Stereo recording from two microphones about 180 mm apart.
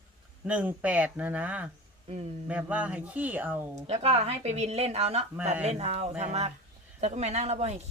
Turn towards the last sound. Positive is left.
turn(degrees=-40)  # may be behind; listen again after turning